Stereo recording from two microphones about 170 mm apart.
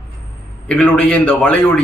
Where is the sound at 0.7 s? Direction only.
10° left (ahead or behind).